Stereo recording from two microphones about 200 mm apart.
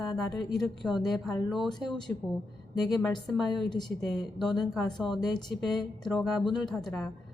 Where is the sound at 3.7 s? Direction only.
Centre (ahead or behind).